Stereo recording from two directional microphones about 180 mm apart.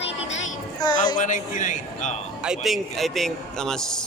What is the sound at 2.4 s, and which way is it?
A man's voice, centre (ahead or behind).